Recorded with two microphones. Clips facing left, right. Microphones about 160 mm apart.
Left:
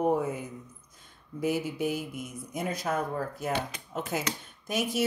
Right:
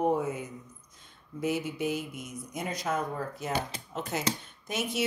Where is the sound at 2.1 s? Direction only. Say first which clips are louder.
Left 2 dB; 55° left (ahead or behind).